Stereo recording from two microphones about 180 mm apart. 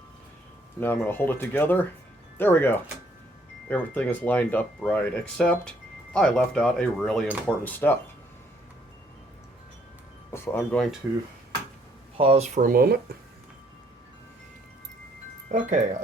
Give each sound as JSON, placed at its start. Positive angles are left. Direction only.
{"t": 0.8, "sound": "speech", "side_deg": 10}
{"t": 10.3, "sound": "speech", "side_deg": 15}
{"t": 11.0, "sound": "speech", "side_deg": -5}
{"t": 12.1, "sound": "speech", "side_deg": -35}
{"t": 15.4, "sound": "speech", "side_deg": -45}